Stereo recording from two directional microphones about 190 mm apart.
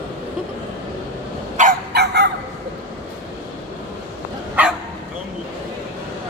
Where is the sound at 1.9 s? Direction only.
60° right (ahead or behind).